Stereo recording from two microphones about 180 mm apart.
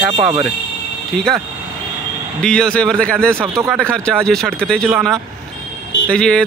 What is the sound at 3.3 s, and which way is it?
Speech, 15° right (ahead or behind).